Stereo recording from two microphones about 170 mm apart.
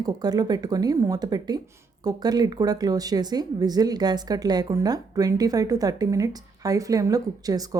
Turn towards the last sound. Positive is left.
turn(degrees=-20)  # may be behind; listen again after turning